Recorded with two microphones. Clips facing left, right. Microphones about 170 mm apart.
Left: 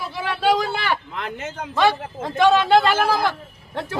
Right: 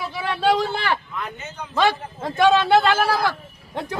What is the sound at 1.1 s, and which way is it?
Speech, 90° left.